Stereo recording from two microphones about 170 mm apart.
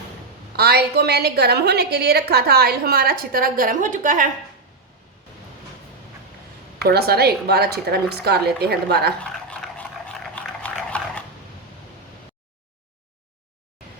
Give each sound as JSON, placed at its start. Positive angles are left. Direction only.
{"t": 0.5, "sound": "a woman's voice", "side_deg": -70}
{"t": 6.8, "sound": "a woman's voice", "side_deg": -65}
{"t": 9.2, "sound": "dog", "side_deg": 5}